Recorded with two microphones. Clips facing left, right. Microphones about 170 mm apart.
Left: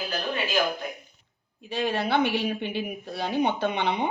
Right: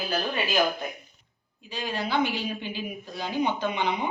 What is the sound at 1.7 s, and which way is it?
A woman's voice, 65° left (ahead or behind).